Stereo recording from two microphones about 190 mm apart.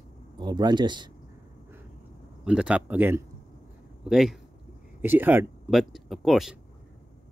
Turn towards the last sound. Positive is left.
turn(degrees=0)  # may be behind; listen again after turning